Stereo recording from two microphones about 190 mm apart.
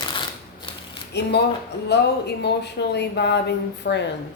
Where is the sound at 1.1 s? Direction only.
65° left (ahead or behind).